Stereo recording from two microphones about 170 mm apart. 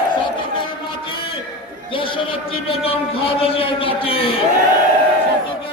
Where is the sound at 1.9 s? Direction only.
30° left (ahead or behind).